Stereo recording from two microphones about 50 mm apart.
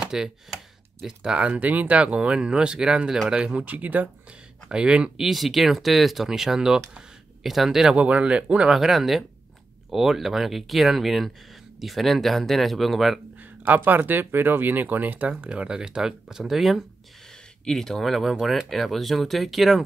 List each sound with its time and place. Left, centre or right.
0.0 s a sound: centre
1.0 s speech: centre
1.4 s speech: right
3.6 s speech: right
4.6 s speech: centre
5.2 s speech: centre
7.9 s speech: right
8.7 s speech: centre
13.4 s speech: right; by 16.8 s centre
17.3 s speech: centre